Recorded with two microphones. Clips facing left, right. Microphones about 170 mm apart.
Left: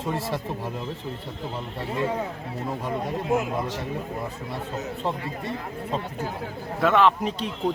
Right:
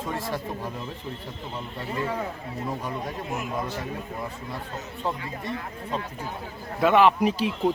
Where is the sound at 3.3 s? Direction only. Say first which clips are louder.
Left 7 dB; 90° left.